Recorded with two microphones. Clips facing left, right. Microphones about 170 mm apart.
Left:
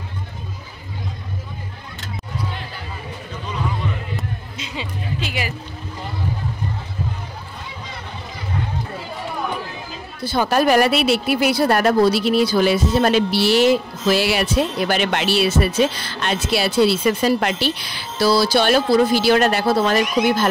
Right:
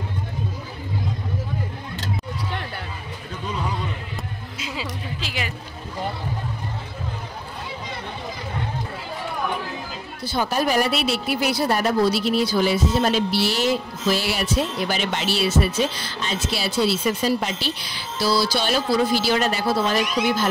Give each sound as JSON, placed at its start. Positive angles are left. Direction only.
{"t": 4.2, "sound": "music", "side_deg": -5}
{"t": 10.2, "sound": "speech", "side_deg": 65}